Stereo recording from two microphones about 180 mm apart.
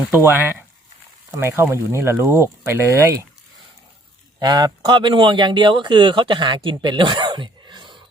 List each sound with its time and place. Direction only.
0.1 s speech: 10° right (ahead or behind)
4.4 s speech: 25° right (ahead or behind)